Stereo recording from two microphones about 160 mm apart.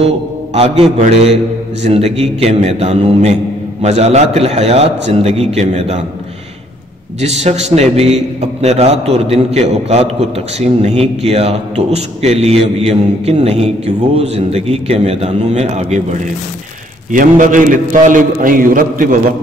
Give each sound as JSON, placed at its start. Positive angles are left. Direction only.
{"t": 1.0, "sound": "a man's voice", "side_deg": -40}
{"t": 7.2, "sound": "a man's voice", "side_deg": -40}